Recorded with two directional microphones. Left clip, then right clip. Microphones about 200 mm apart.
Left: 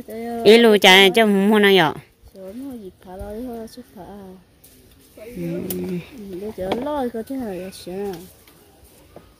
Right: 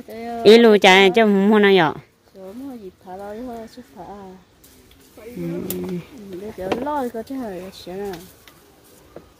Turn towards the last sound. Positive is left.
turn(degrees=50)  # may be behind; listen again after turning